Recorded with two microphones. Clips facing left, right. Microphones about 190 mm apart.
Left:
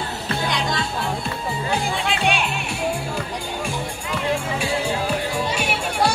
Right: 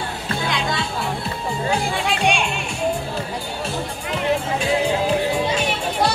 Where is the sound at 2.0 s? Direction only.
5° left (ahead or behind).